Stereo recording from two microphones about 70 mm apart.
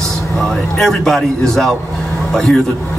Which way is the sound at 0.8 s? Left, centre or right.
Centre.